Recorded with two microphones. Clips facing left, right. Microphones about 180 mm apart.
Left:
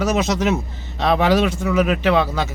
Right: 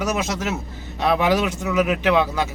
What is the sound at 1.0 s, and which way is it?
Speech, 15° right (ahead or behind).